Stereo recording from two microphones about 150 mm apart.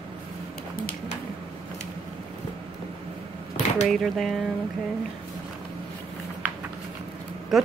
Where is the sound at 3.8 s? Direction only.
Centre (ahead or behind).